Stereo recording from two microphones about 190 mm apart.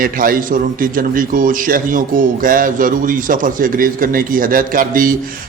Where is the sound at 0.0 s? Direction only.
45° right (ahead or behind).